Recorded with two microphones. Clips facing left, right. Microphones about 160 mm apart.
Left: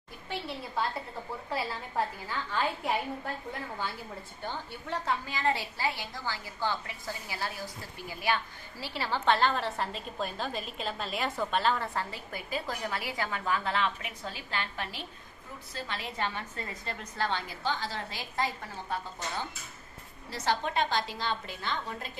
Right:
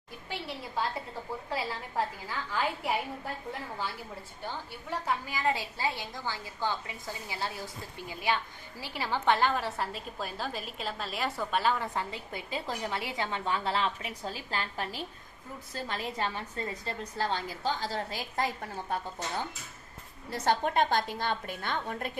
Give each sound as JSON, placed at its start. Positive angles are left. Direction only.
{"t": 0.3, "sound": "a woman's voice", "side_deg": -15}
{"t": 4.4, "sound": "a woman's voice", "side_deg": -10}
{"t": 20.3, "sound": "a woman's voice", "side_deg": -50}